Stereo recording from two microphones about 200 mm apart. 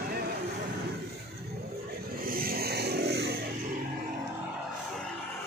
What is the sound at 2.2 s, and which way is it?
Vehicle, 45° right (ahead or behind).